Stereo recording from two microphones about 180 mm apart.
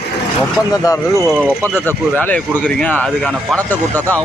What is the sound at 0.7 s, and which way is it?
Speech, 20° left (ahead or behind).